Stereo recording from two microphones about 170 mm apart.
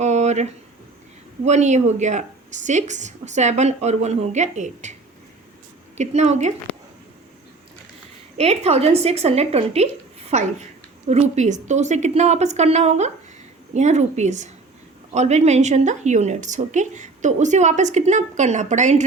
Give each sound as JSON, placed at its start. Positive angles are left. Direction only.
{"t": 0.0, "sound": "a sound", "side_deg": -40}
{"t": 1.5, "sound": "a woman's voice", "side_deg": -45}
{"t": 6.0, "sound": "speech", "side_deg": -40}
{"t": 8.4, "sound": "a woman's voice", "side_deg": -40}